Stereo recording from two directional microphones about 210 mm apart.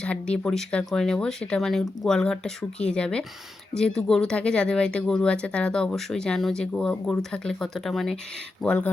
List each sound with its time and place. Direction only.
0.0 s speech: 5° left (ahead or behind)